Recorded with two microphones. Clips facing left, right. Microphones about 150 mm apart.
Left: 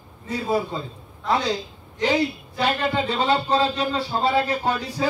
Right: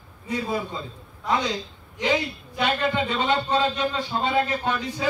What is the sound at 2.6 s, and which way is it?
A man's voice, 35° left (ahead or behind).